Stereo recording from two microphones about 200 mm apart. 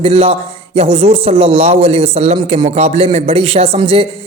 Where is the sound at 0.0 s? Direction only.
30° right (ahead or behind).